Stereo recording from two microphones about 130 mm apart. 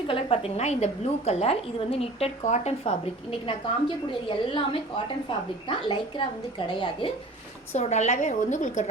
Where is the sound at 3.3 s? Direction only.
45° left (ahead or behind).